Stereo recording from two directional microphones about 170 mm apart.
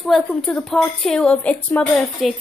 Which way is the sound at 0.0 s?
Centre (ahead or behind).